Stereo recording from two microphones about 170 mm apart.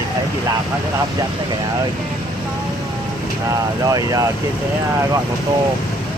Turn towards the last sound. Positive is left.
turn(degrees=-20)  # may be behind; listen again after turning